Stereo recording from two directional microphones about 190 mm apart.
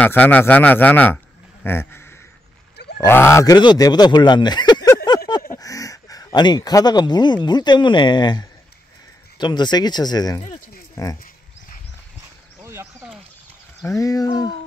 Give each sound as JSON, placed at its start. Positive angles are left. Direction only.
{"t": 0.0, "sound": "speech", "side_deg": 10}
{"t": 12.6, "sound": "a sound", "side_deg": -15}
{"t": 13.7, "sound": "speech", "side_deg": 15}